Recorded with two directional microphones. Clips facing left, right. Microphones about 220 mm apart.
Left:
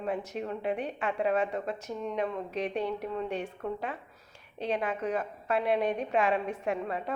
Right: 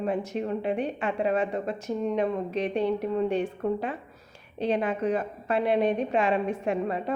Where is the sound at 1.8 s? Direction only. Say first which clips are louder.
Right 6 dB; 30° right (ahead or behind).